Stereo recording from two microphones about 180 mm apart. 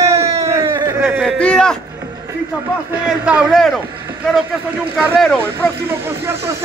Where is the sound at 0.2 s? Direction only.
35° right (ahead or behind).